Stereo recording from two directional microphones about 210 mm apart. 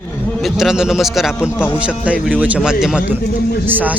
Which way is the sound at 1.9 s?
5° right (ahead or behind).